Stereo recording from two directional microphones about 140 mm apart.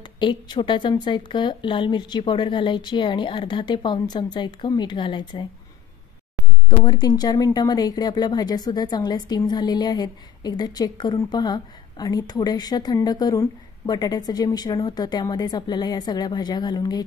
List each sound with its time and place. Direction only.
0.0 s speech: 35° left (ahead or behind)
6.8 s a woman's voice: 30° left (ahead or behind)